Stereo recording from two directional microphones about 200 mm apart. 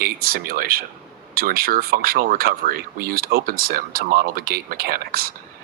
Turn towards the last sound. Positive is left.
turn(degrees=-45)  # may be behind; listen again after turning